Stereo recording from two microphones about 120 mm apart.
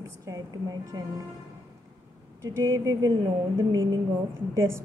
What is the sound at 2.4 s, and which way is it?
A woman's voice, 25° right (ahead or behind).